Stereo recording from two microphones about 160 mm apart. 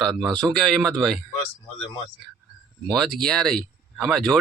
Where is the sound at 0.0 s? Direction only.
Centre (ahead or behind).